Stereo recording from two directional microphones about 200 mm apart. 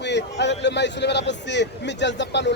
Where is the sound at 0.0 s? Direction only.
60° left (ahead or behind).